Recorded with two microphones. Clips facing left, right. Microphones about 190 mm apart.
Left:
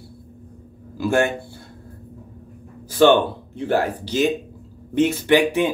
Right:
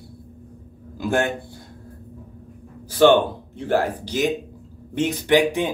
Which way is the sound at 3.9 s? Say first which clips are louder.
Left 2 dB; 15° right (ahead or behind).